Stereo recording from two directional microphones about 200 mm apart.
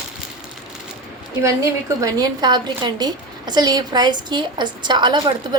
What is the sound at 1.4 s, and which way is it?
A woman's voice, 15° right (ahead or behind).